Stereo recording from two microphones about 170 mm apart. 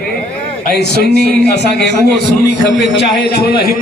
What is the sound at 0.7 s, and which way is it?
A man's voice, 75° left (ahead or behind).